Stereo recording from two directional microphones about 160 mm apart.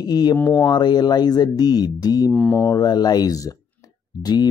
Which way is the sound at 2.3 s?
10° left (ahead or behind).